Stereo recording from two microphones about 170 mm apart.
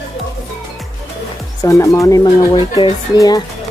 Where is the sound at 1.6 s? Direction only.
20° left (ahead or behind).